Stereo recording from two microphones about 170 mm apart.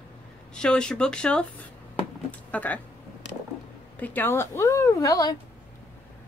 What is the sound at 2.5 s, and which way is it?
Speech, 10° left (ahead or behind).